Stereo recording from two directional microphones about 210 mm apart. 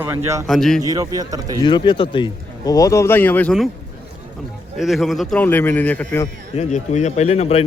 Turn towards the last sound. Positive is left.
turn(degrees=30)  # may be behind; listen again after turning